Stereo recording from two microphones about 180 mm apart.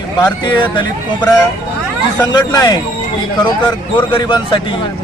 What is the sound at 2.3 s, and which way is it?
A man's voice, 20° left (ahead or behind).